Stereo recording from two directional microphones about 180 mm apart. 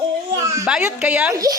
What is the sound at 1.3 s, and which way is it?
Speech, 20° right (ahead or behind).